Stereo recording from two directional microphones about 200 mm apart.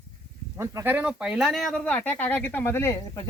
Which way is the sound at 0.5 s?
15° right (ahead or behind).